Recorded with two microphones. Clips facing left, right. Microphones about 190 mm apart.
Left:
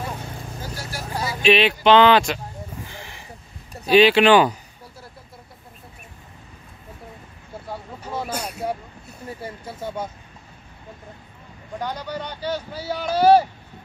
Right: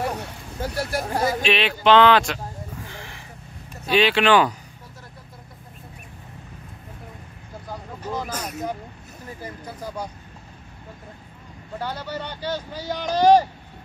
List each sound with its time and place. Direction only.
0.0 s vehicle: 65° right (ahead or behind); by 1.4 s 50° right (ahead or behind)
1.5 s speech: 5° left (ahead or behind)
3.9 s speech: 5° left (ahead or behind)
8.1 s speech: 30° left (ahead or behind)
11.8 s speech: 15° left (ahead or behind)